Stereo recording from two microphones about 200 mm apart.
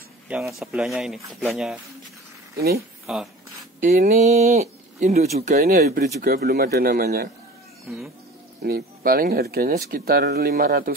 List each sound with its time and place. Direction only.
0.3 s speech: centre (ahead or behind)
3.1 s speech: 5° right (ahead or behind)
3.8 s speech: 40° right (ahead or behind)
8.6 s speech: 50° right (ahead or behind)